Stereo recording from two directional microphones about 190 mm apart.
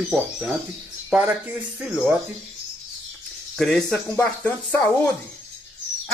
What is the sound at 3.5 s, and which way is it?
Speech, 5° left (ahead or behind).